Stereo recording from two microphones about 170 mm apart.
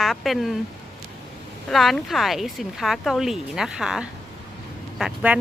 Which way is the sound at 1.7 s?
Centre (ahead or behind).